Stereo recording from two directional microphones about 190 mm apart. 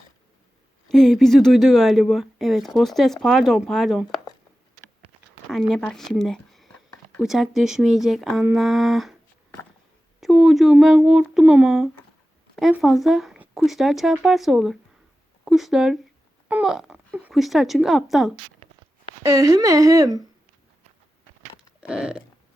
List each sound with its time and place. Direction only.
0.9 s speech: centre (ahead or behind)
5.5 s speech: centre (ahead or behind)
6.1 s a sound: centre (ahead or behind)
7.2 s speech: centre (ahead or behind)
10.2 s speech: centre (ahead or behind)
19.2 s a woman's voice: 15° right (ahead or behind)
21.8 s a sound: 5° right (ahead or behind)